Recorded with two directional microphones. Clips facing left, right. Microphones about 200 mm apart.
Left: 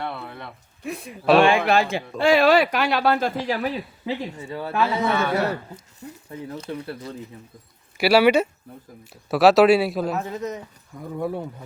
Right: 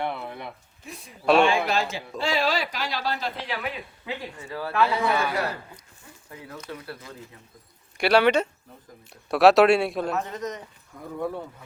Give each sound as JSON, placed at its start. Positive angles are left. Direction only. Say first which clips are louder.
{"t": 0.0, "sound": "a sound", "louder": "right 1 dB", "side_deg": -15}
{"t": 0.9, "sound": "speech", "louder": "left 11 dB", "side_deg": 60}
{"t": 1.2, "sound": "a man's voice", "louder": "left 3 dB", "side_deg": 0}
{"t": 1.5, "sound": "speech", "louder": "left 5 dB", "side_deg": 60}
{"t": 3.4, "sound": "speech", "louder": "left 7 dB", "side_deg": 40}
{"t": 4.4, "sound": "speech", "louder": "right 3 dB", "side_deg": 25}
{"t": 6.0, "sound": "a sound", "louder": "left 16 dB", "side_deg": 40}
{"t": 6.5, "sound": "speech", "louder": "left 5 dB", "side_deg": 25}
{"t": 7.9, "sound": "a man's voice", "louder": "left 3 dB", "side_deg": 5}